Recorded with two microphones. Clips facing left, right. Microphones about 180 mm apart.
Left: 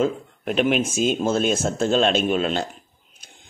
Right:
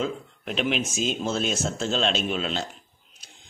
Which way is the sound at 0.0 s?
50° left (ahead or behind).